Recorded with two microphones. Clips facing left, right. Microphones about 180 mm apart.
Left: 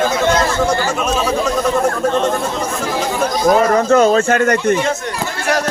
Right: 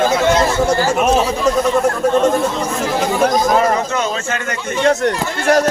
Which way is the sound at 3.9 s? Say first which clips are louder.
Left 9 dB; 50° left (ahead or behind).